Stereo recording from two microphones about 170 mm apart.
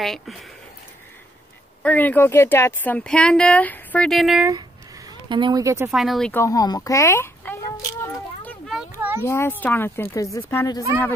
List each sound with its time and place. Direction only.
0.0 s speech: centre (ahead or behind)
1.8 s speech: 10° left (ahead or behind)
5.3 s speech: 25° right (ahead or behind)
5.9 s speech: centre (ahead or behind)
6.3 s a sound: 20° left (ahead or behind)
8.9 s children playing: 15° right (ahead or behind)
9.2 s speech: 15° left (ahead or behind)